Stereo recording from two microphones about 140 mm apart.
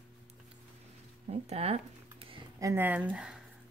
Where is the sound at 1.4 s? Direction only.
45° right (ahead or behind).